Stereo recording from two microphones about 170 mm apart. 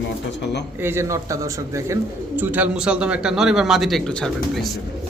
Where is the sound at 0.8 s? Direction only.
15° right (ahead or behind); by 4.7 s centre (ahead or behind).